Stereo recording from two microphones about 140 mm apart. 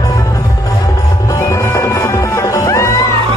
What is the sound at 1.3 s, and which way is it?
Music, 20° left (ahead or behind).